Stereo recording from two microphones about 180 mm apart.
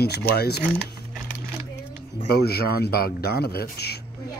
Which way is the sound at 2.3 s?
60° left (ahead or behind).